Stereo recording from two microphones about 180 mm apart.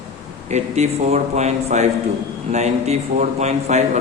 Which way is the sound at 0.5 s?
40° right (ahead or behind).